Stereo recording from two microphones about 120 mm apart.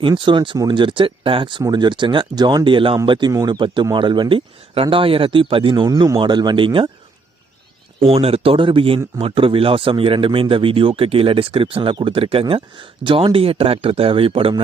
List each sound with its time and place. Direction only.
0.0 s speech: 40° right (ahead or behind)
5.9 s speech: 25° right (ahead or behind)
6.1 s speech: 40° right (ahead or behind)
8.0 s speech: 55° right (ahead or behind)